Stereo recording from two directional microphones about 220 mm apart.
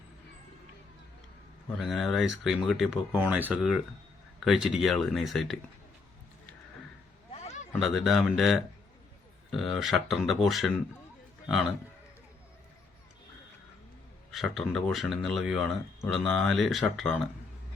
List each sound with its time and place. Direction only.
1.7 s speech: centre (ahead or behind)
7.3 s a sound: 30° left (ahead or behind)
7.8 s a man's voice: centre (ahead or behind)
14.3 s speech: centre (ahead or behind)